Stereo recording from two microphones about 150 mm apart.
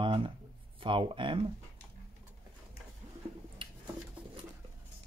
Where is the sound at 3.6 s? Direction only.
35° right (ahead or behind).